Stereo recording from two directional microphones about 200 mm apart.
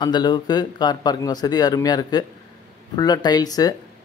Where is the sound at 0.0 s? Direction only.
20° left (ahead or behind).